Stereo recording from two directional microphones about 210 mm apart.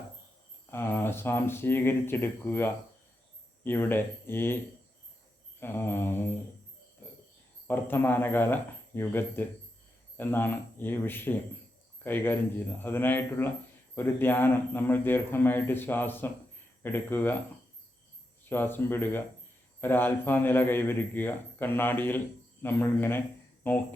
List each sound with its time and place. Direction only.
0.7 s a man's voice: 10° left (ahead or behind)
7.7 s a man's voice: 10° left (ahead or behind)
18.4 s a man's voice: 10° left (ahead or behind)